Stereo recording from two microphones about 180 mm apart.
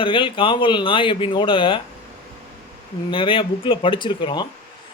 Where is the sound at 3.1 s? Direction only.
30° left (ahead or behind).